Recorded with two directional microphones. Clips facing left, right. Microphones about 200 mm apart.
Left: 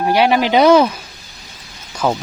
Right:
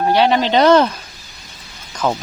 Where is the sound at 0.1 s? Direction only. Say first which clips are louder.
Left 1 dB; 10° left (ahead or behind).